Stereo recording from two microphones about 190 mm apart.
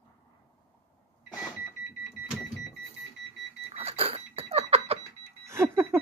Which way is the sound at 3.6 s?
30° right (ahead or behind).